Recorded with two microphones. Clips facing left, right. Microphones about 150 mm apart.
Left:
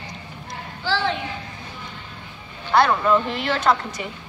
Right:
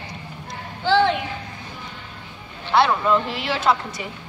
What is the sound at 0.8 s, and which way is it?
Speech, 20° right (ahead or behind).